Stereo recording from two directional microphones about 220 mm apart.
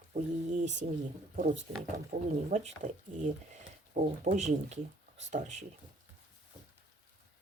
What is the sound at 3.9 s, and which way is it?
Speech, 35° right (ahead or behind).